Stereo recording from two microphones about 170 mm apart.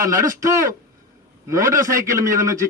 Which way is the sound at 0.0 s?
20° right (ahead or behind).